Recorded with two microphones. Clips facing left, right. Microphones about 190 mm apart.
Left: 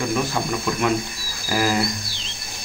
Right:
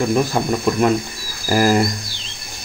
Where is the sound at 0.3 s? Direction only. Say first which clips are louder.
Right 5 dB; 40° right (ahead or behind).